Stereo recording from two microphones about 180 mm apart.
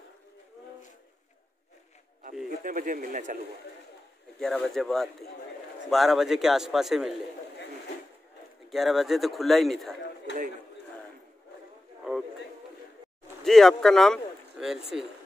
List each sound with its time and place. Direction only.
2.6 s speech: 50° right (ahead or behind)
4.4 s a man's voice: centre (ahead or behind)
8.6 s a man's voice: centre (ahead or behind)
13.5 s speech: centre (ahead or behind)